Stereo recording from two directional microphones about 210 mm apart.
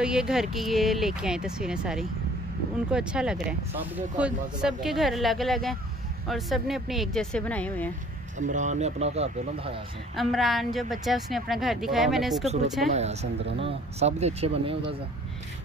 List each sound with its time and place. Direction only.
0.0 s speech: 5° right (ahead or behind)
8.4 s speech: 35° right (ahead or behind)
10.1 s speech: centre (ahead or behind)
12.9 s speech: 30° right (ahead or behind)